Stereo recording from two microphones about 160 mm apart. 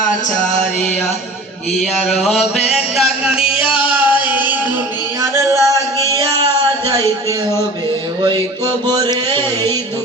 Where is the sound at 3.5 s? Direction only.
5° right (ahead or behind).